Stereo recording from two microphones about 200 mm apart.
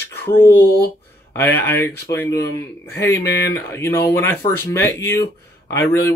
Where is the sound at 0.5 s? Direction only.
50° left (ahead or behind).